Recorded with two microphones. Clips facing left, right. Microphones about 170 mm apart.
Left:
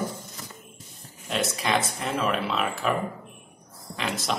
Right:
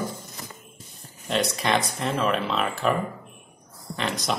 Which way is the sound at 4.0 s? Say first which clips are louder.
Right 2 dB; centre (ahead or behind).